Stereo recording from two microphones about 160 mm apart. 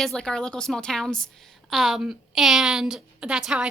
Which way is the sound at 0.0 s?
5° left (ahead or behind).